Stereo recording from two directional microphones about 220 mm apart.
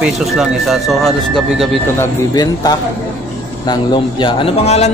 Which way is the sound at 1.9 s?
15° left (ahead or behind).